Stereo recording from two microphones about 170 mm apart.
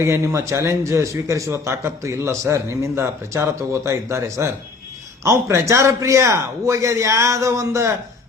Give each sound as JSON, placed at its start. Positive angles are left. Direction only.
{"t": 0.0, "sound": "a man's voice", "side_deg": -15}